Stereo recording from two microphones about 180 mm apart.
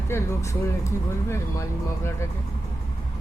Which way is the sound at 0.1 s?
15° left (ahead or behind).